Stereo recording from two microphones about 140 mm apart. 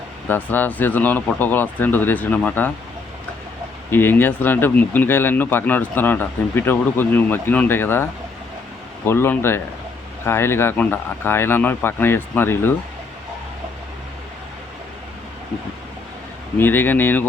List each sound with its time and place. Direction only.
0.3 s speech: 15° left (ahead or behind)
3.9 s speech: 15° left (ahead or behind)
9.0 s speech: 15° left (ahead or behind)
16.6 s speech: 15° left (ahead or behind)